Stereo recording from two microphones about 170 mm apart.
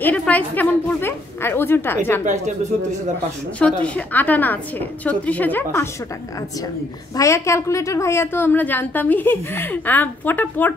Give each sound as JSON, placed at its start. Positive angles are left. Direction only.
{"t": 0.0, "sound": "a woman's voice", "side_deg": 10}
{"t": 2.2, "sound": "speech", "side_deg": -45}
{"t": 3.5, "sound": "a woman's voice", "side_deg": 5}
{"t": 7.2, "sound": "a woman's voice", "side_deg": 15}